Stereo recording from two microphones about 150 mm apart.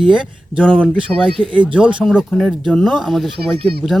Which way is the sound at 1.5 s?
35° right (ahead or behind).